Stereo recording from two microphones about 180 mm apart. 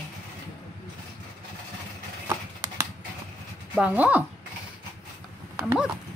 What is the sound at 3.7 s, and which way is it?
Speech, 10° right (ahead or behind).